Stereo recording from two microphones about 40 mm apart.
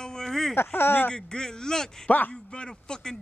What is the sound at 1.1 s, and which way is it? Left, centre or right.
Speech, centre.